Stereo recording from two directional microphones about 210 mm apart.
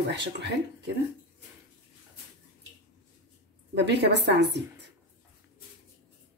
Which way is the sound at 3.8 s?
55° right (ahead or behind).